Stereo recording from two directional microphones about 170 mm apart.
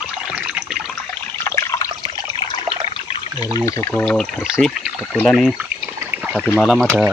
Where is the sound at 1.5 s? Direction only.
20° left (ahead or behind).